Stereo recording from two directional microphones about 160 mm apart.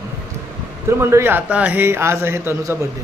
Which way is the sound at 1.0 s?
15° right (ahead or behind).